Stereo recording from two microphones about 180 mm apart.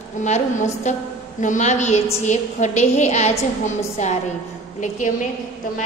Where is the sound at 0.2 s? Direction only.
40° left (ahead or behind).